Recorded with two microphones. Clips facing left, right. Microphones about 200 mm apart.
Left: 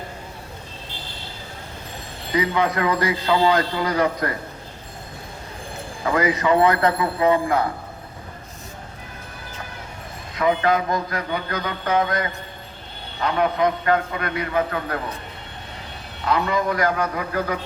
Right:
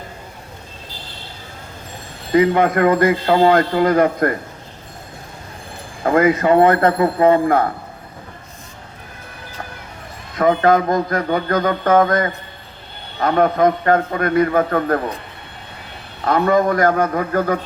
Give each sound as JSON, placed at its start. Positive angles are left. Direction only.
{"t": 2.3, "sound": "a man's voice", "side_deg": -50}
{"t": 6.0, "sound": "a man's voice", "side_deg": -50}
{"t": 10.3, "sound": "a man's voice", "side_deg": -45}
{"t": 16.2, "sound": "a man's voice", "side_deg": -50}